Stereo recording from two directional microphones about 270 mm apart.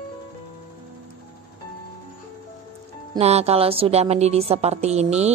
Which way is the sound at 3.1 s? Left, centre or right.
Right.